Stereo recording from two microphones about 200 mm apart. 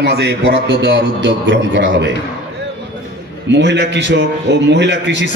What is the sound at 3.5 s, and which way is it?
A man's voice, 60° right (ahead or behind).